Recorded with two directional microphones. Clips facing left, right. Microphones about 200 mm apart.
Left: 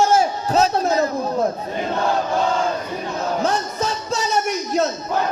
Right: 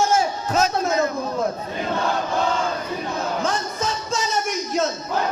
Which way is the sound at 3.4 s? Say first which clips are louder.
Left 3 dB; 40° left (ahead or behind).